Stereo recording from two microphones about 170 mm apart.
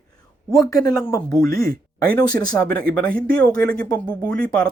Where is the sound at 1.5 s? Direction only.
60° right (ahead or behind).